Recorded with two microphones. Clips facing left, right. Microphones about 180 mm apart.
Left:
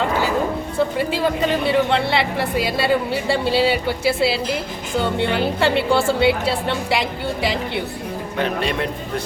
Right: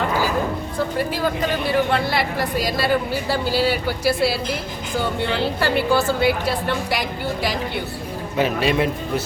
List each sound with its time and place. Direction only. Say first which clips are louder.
1.2 s a woman's voice: left 5 dB; 25° left (ahead or behind)
8.4 s speech: right 3 dB; 5° right (ahead or behind)